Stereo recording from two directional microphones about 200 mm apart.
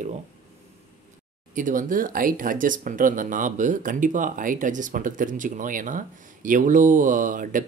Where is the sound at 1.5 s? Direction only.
40° right (ahead or behind).